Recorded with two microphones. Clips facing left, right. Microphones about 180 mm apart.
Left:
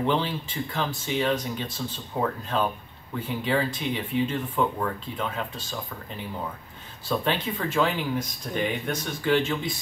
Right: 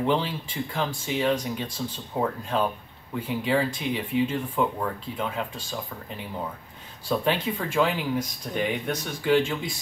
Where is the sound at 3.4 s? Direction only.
10° right (ahead or behind).